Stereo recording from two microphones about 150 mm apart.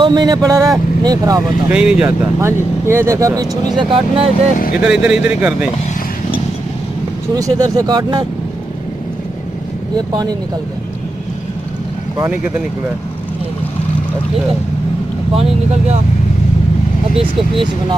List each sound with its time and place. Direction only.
0.0 s speech: 30° right (ahead or behind)
1.7 s speech: 10° right (ahead or behind); by 4.3 s 35° right (ahead or behind)
4.8 s speech: 5° right (ahead or behind)
7.3 s speech: 25° right (ahead or behind)
9.9 s speech: 25° right (ahead or behind)
17.1 s speech: 35° right (ahead or behind)